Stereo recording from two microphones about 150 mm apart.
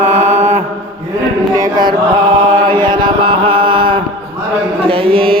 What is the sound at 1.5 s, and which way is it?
Mantra, 25° right (ahead or behind).